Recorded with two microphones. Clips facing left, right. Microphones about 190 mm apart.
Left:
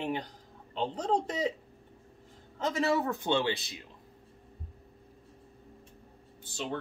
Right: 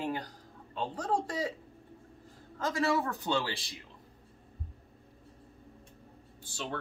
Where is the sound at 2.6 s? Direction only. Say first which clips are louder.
Left 1 dB; 20° left (ahead or behind).